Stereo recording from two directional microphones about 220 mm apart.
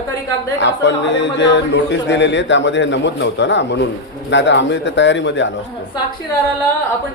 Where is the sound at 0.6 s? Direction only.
55° left (ahead or behind).